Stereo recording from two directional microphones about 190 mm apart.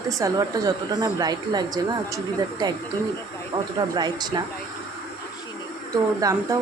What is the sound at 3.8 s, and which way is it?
Speech, 20° right (ahead or behind).